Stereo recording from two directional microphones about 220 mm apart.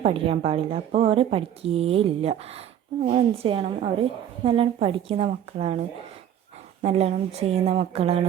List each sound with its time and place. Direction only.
0.0 s speech: 25° right (ahead or behind)
6.8 s speech: 25° right (ahead or behind)